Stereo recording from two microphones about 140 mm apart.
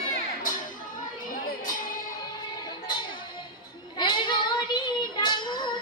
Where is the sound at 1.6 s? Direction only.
75° left (ahead or behind).